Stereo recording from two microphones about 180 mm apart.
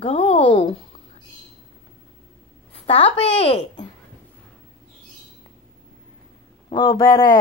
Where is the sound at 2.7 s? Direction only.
35° left (ahead or behind).